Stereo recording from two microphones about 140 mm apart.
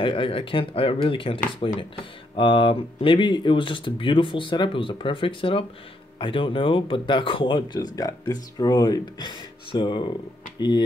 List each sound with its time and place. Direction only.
0.0 s speech: 35° left (ahead or behind)